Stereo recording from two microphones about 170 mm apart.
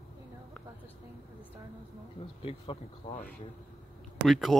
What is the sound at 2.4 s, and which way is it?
Speech, 35° left (ahead or behind).